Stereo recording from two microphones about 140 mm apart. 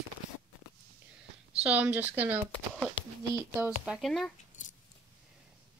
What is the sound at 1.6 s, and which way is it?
Speech, 10° right (ahead or behind).